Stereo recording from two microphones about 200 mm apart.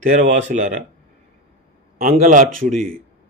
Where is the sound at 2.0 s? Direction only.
40° right (ahead or behind).